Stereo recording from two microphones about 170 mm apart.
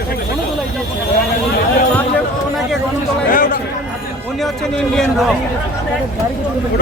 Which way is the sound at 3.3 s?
55° left (ahead or behind).